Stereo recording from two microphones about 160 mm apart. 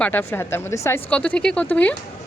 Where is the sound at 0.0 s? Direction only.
15° left (ahead or behind).